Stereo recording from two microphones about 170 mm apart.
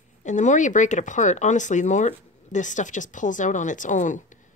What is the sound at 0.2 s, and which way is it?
Speech, 45° left (ahead or behind).